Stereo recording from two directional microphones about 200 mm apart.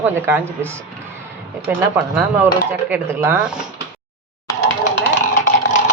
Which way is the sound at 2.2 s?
5° right (ahead or behind).